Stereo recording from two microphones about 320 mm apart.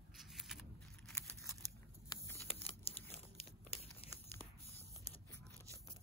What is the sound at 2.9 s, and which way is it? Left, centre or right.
Crumpling, centre.